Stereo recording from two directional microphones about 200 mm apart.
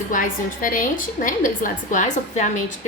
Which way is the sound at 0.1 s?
45° left (ahead or behind).